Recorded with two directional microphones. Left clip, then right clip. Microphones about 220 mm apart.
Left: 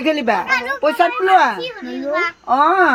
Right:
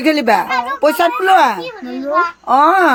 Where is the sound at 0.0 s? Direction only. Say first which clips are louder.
Right 4 dB; 40° right (ahead or behind).